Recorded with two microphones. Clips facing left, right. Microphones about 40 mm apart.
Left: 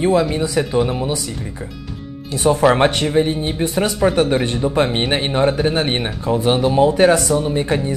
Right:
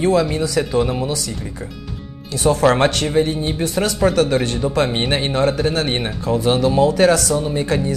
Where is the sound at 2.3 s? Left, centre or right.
Centre.